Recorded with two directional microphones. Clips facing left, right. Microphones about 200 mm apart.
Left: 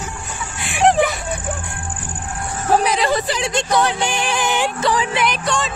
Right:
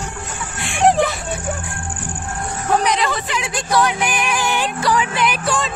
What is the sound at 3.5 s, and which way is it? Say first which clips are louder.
Music: right 1 dB; 25° left (ahead or behind).